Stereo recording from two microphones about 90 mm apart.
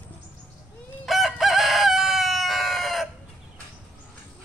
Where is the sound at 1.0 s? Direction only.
Centre (ahead or behind).